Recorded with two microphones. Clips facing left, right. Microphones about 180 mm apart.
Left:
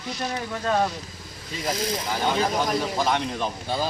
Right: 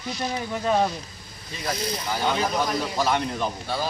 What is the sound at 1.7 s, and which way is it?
Speech, 90° left.